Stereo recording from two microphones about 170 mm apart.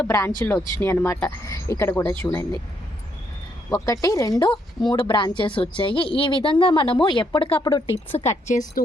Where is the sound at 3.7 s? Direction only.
20° left (ahead or behind).